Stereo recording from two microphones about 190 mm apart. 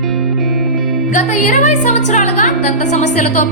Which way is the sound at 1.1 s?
40° left (ahead or behind).